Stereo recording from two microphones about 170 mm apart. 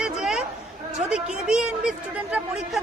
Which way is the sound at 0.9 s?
5° right (ahead or behind).